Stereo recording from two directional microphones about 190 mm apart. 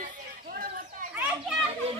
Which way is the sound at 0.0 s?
50° right (ahead or behind).